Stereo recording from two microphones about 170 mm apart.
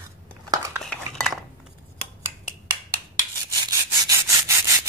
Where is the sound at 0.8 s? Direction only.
Centre (ahead or behind).